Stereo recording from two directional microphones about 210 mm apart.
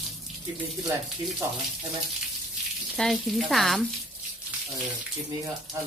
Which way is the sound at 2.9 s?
Centre (ahead or behind).